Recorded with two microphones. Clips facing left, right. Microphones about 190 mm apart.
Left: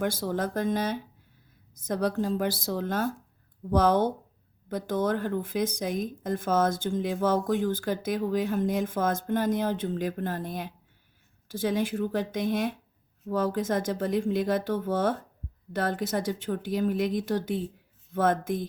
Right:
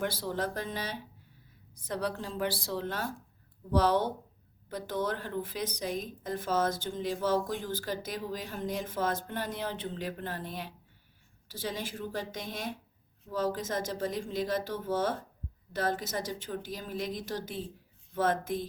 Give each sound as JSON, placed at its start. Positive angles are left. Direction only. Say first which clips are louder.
{"t": 0.0, "sound": "speech", "louder": "left 4 dB", "side_deg": 50}